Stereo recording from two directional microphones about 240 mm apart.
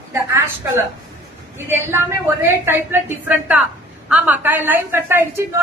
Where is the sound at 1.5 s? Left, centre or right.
Centre.